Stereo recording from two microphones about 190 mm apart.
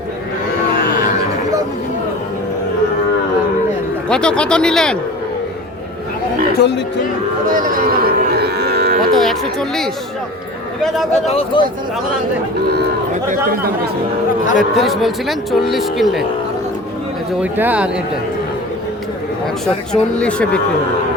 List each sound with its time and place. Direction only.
4.1 s speech: 5° left (ahead or behind)
6.6 s speech: 65° left (ahead or behind)
7.4 s speech: 45° right (ahead or behind)
9.1 s speech: centre (ahead or behind)
11.1 s speech: 30° left (ahead or behind)
13.5 s speech: 50° right (ahead or behind)
14.6 s speech: centre (ahead or behind)
17.4 s speech: 10° right (ahead or behind)
19.6 s speech: 5° left (ahead or behind)